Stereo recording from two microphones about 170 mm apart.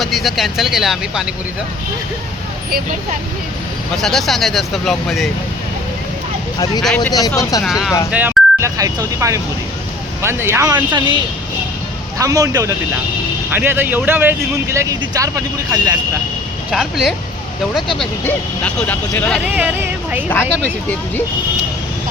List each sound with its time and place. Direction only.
0.0 s speech: centre (ahead or behind)
2.6 s speech: 60° right (ahead or behind)
3.9 s speech: centre (ahead or behind)
6.8 s speech: 5° left (ahead or behind)
7.1 s speech: 20° left (ahead or behind)
7.6 s speech: 5° right (ahead or behind); by 11.2 s 25° right (ahead or behind)
12.2 s speech: 20° right (ahead or behind)
16.7 s speech: centre (ahead or behind)
18.3 s speech: 10° left (ahead or behind)
19.5 s speech: 10° right (ahead or behind)